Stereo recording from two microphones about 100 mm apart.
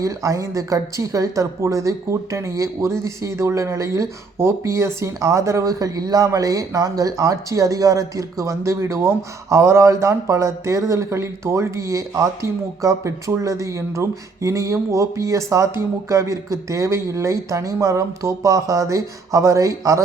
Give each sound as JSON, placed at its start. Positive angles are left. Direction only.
{"t": 0.0, "sound": "speech", "side_deg": -30}